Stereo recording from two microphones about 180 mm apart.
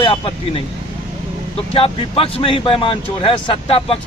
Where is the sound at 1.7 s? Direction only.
30° left (ahead or behind).